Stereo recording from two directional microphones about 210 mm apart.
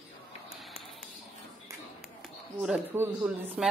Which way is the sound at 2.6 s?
5° right (ahead or behind).